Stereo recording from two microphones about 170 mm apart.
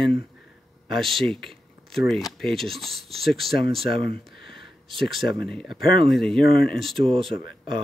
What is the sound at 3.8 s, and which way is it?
Speech, 30° right (ahead or behind).